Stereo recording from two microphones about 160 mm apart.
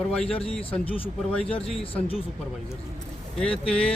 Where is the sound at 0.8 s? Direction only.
35° left (ahead or behind).